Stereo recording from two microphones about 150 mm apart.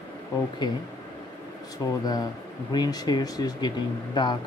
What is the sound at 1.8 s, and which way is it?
Speech, 25° left (ahead or behind).